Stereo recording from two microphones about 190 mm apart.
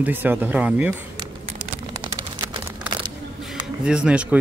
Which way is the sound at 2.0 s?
20° right (ahead or behind).